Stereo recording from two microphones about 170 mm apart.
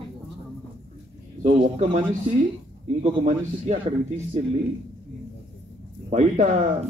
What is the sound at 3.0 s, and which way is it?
Speech, 40° right (ahead or behind).